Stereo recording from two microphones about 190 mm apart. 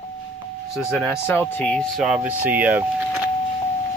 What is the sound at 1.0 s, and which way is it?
Speech, 10° left (ahead or behind).